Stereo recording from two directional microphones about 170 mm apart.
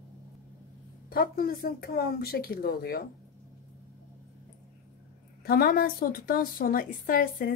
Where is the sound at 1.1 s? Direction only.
60° left (ahead or behind).